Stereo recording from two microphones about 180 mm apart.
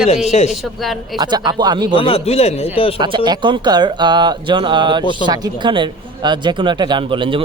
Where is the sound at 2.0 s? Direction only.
30° left (ahead or behind).